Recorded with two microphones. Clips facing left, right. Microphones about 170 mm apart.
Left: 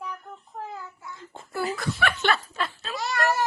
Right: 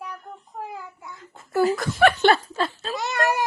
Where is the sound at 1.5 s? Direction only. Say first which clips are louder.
Right 8 dB; 40° right (ahead or behind); by 3.4 s 15° right (ahead or behind).